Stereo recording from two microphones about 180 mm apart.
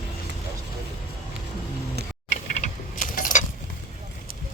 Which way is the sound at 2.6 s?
45° left (ahead or behind).